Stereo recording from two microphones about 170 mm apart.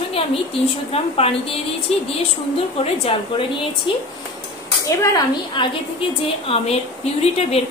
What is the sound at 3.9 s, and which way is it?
A woman's voice, 30° left (ahead or behind).